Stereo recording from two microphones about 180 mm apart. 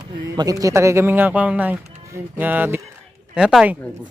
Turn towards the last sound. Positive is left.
turn(degrees=0)  # may be behind; listen again after turning